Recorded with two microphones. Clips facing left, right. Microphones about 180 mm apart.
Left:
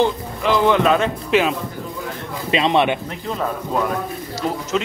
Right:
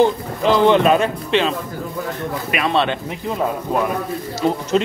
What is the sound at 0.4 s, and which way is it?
Speech, 30° right (ahead or behind).